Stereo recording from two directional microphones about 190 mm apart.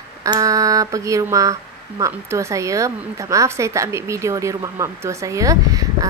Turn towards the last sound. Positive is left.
turn(degrees=-20)  # may be behind; listen again after turning